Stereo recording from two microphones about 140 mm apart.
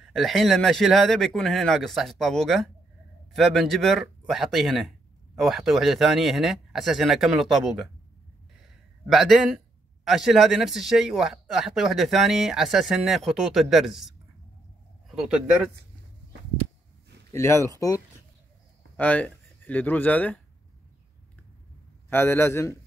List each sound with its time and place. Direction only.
0.1 s speech: centre (ahead or behind)
9.0 s speech: centre (ahead or behind)
17.3 s speech: 20° left (ahead or behind)
18.9 s speech: 10° left (ahead or behind)
22.1 s a man's voice: 15° left (ahead or behind)